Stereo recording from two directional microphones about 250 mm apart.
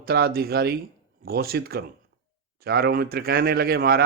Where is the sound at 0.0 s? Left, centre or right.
Right.